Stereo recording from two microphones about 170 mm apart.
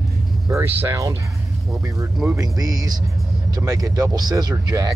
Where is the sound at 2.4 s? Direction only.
20° right (ahead or behind).